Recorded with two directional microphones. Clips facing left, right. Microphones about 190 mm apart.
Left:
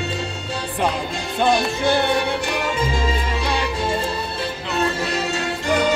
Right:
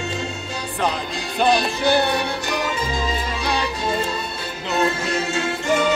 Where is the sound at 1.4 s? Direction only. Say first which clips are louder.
Even; 25° left (ahead or behind).